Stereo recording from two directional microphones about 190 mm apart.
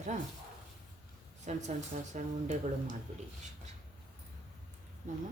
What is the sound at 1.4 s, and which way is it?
Speech, 40° right (ahead or behind).